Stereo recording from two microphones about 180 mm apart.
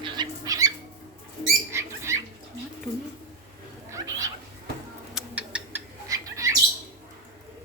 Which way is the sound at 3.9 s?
20° right (ahead or behind).